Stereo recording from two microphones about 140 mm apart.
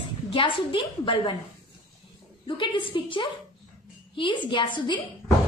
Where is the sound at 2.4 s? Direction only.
35° left (ahead or behind).